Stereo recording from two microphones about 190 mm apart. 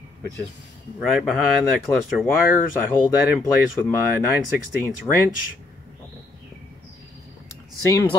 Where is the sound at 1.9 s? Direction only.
15° left (ahead or behind).